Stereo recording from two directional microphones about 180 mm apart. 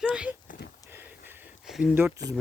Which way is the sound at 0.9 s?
10° right (ahead or behind).